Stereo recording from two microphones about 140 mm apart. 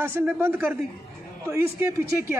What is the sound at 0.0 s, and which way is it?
Speech, 15° right (ahead or behind).